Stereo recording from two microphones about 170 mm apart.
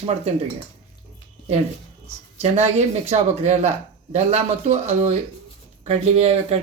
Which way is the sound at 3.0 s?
40° right (ahead or behind).